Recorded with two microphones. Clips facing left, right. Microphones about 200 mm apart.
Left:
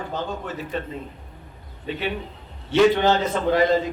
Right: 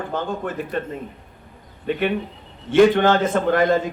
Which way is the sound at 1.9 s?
55° right (ahead or behind).